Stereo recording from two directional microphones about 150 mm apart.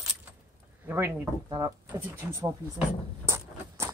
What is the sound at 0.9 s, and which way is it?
Speech, 15° right (ahead or behind).